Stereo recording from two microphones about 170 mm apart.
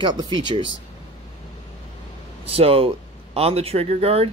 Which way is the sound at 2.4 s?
35° right (ahead or behind).